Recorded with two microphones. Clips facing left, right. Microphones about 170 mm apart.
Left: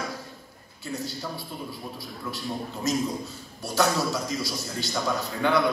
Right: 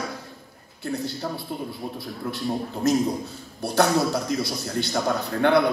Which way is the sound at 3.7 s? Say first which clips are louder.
Right 4 dB; 60° right (ahead or behind).